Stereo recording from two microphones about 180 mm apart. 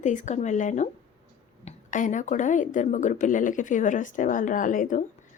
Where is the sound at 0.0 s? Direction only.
40° left (ahead or behind).